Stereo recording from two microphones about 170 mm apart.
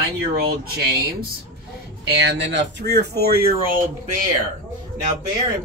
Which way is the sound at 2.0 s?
90° right.